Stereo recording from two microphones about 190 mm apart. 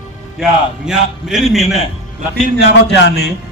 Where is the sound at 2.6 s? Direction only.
65° left (ahead or behind).